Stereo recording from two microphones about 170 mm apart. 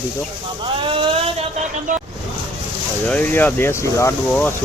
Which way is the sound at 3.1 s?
10° left (ahead or behind).